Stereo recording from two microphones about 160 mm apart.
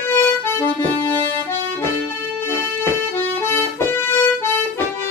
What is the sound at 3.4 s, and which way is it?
Accordion, 15° left (ahead or behind).